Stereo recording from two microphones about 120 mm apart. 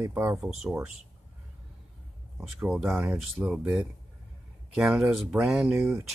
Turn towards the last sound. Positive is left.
turn(degrees=-20)  # may be behind; listen again after turning